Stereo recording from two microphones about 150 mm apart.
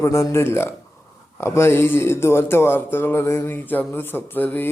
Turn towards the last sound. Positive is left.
turn(degrees=10)  # may be behind; listen again after turning